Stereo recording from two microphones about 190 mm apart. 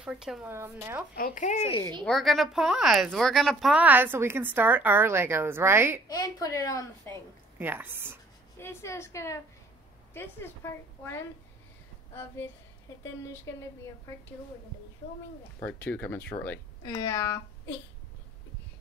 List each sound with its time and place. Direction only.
0.0 s a woman's voice: 5° right (ahead or behind)
1.1 s speech: 45° left (ahead or behind)
2.0 s a woman's voice: centre (ahead or behind)
6.0 s speech: 20° left (ahead or behind)
7.5 s a woman's voice: 10° right (ahead or behind)
8.5 s speech: 15° left (ahead or behind)
13.3 s speech: 15° left (ahead or behind)
15.6 s speech: 10° left (ahead or behind)